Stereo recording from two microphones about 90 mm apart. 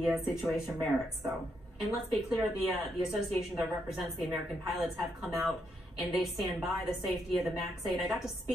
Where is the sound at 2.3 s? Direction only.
5° right (ahead or behind).